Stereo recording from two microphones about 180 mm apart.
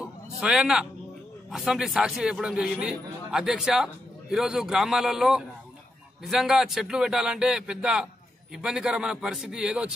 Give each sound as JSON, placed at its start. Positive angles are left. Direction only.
{"t": 0.0, "sound": "music", "side_deg": -5}
{"t": 1.5, "sound": "a man's voice", "side_deg": 0}